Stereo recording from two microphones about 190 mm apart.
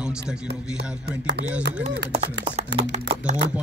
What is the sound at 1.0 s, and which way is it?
Speech, 60° right (ahead or behind).